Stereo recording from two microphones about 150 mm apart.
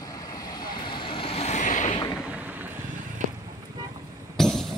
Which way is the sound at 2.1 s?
10° right (ahead or behind).